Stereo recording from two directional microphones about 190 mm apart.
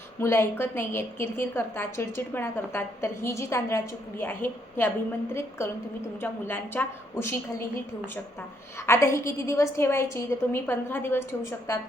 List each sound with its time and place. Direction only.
0.2 s a woman's voice: 15° left (ahead or behind)
8.9 s a woman's voice: 15° left (ahead or behind)